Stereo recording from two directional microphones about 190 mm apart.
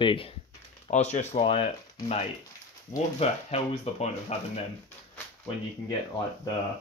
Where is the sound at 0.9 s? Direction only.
35° left (ahead or behind).